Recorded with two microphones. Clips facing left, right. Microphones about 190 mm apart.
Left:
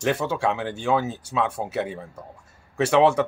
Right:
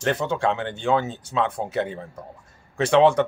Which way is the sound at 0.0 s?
5° left (ahead or behind).